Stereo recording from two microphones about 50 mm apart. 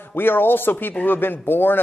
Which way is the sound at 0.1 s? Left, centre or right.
Left.